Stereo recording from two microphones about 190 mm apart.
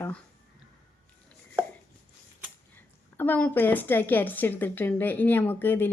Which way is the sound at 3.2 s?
10° left (ahead or behind).